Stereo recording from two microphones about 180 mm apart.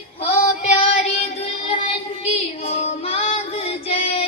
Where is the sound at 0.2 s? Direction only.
35° left (ahead or behind).